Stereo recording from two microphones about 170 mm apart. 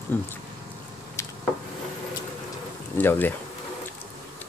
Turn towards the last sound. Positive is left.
turn(degrees=10)  # may be behind; listen again after turning